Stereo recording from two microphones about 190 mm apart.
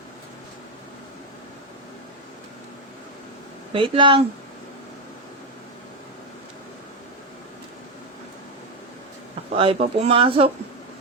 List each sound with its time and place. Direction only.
3.7 s speech: 25° right (ahead or behind)
9.6 s speech: 30° right (ahead or behind)